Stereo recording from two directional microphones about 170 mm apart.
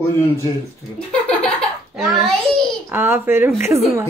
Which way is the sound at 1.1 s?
5° left (ahead or behind).